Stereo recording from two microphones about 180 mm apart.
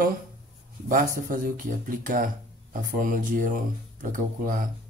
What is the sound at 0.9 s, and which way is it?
Speech, 50° right (ahead or behind).